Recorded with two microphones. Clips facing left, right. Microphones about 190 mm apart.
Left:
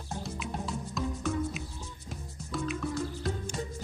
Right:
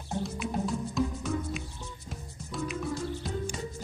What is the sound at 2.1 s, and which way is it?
Music, centre (ahead or behind).